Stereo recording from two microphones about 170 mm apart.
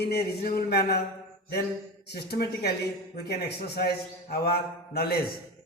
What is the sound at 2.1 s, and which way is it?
A man's voice, 70° left (ahead or behind).